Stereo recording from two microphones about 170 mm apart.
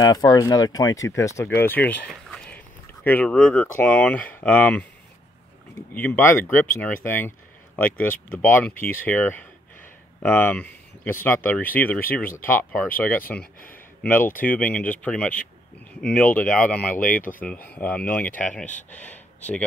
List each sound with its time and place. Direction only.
0.0 s speech: 25° left (ahead or behind)
5.9 s speech: 10° left (ahead or behind)
13.4 s speech: 55° left (ahead or behind)
14.3 s speech: 10° left (ahead or behind)
17.0 s speech: 50° left (ahead or behind)
17.3 s speech: 10° left (ahead or behind)